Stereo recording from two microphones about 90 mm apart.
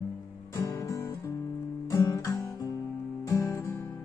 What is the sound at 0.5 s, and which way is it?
Guitar, 35° left (ahead or behind).